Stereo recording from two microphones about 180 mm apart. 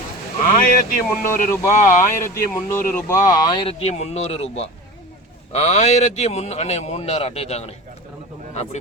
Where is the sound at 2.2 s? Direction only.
15° left (ahead or behind).